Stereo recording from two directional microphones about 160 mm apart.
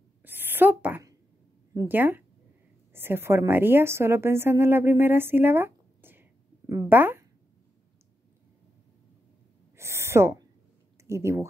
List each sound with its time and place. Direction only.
0.2 s a sound: 10° right (ahead or behind)
1.7 s a woman's voice: 15° right (ahead or behind)
9.8 s owl: 15° right (ahead or behind)
11.1 s speech: 15° right (ahead or behind)